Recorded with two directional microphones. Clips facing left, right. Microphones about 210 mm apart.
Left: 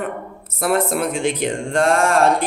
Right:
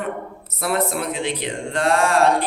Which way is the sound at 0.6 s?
50° left (ahead or behind).